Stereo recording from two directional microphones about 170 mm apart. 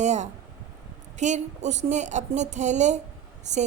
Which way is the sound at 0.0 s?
45° right (ahead or behind).